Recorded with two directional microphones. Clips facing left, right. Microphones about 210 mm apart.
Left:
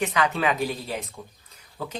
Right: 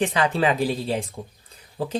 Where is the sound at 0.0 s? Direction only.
30° right (ahead or behind).